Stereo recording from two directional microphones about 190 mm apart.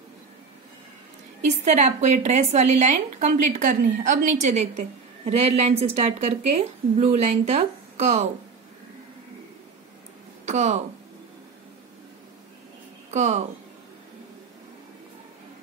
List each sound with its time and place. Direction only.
1.6 s a woman's voice: 35° right (ahead or behind)
10.4 s speech: 35° right (ahead or behind)
13.1 s a woman's voice: 35° right (ahead or behind)